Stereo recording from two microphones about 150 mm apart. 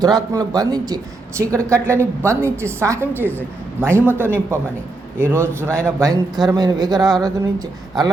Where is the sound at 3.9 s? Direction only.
15° right (ahead or behind).